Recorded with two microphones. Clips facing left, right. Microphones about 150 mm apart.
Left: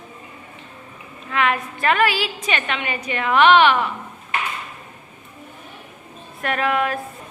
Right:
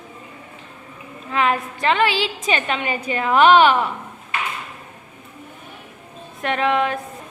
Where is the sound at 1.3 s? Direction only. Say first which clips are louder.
Right 1 dB; 30° right (ahead or behind).